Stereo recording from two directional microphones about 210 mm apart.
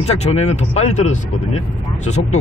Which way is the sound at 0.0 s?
30° left (ahead or behind).